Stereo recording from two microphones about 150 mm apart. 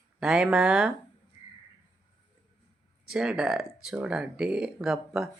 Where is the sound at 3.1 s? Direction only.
5° right (ahead or behind).